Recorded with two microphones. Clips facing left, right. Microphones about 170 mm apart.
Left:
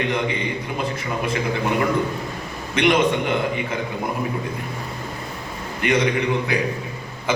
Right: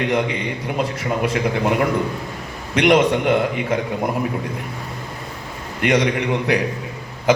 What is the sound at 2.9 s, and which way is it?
Speech, 70° right (ahead or behind).